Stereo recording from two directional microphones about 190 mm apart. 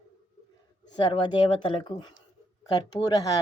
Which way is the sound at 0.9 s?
25° left (ahead or behind).